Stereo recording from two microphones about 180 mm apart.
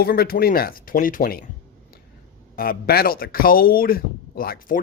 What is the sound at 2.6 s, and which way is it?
Speech, 55° left (ahead or behind).